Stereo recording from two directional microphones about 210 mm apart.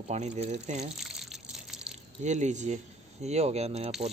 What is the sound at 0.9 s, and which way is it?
Water, centre (ahead or behind).